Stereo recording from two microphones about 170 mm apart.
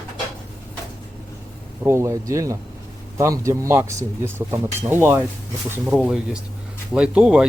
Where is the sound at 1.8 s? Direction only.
15° right (ahead or behind).